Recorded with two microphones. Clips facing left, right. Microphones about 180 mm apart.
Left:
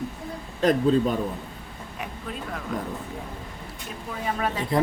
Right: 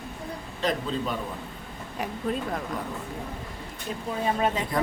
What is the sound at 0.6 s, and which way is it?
Speech, 45° left (ahead or behind).